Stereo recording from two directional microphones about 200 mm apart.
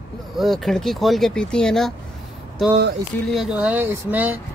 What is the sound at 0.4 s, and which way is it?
Speech, centre (ahead or behind).